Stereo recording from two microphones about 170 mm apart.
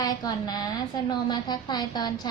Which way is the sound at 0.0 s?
25° left (ahead or behind).